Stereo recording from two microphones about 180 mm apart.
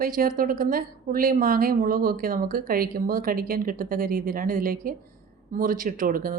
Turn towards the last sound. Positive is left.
turn(degrees=-55)  # may be behind; listen again after turning